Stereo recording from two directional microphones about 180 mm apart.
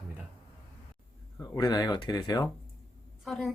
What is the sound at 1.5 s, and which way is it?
Speech, 20° left (ahead or behind).